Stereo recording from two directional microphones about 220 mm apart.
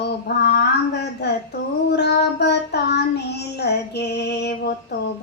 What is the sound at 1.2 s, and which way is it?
Child singing, 50° left (ahead or behind).